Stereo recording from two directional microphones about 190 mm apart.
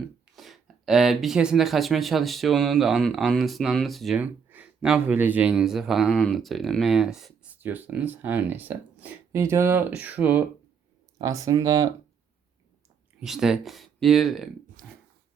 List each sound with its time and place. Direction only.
0.3 s speech: centre (ahead or behind); by 11.9 s 20° right (ahead or behind)
13.1 s speech: centre (ahead or behind)
14.8 s a sound: 45° right (ahead or behind)